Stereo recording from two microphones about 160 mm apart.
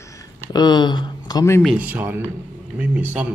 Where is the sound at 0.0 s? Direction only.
20° left (ahead or behind).